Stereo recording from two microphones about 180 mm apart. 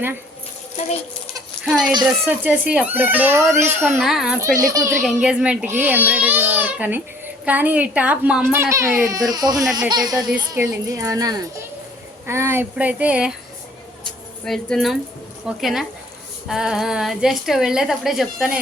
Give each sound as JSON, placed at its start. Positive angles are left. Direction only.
{"t": 1.6, "sound": "a woman's voice", "side_deg": 0}
{"t": 4.4, "sound": "speech", "side_deg": -20}
{"t": 5.0, "sound": "a woman's voice", "side_deg": -5}
{"t": 14.4, "sound": "a woman's voice", "side_deg": 0}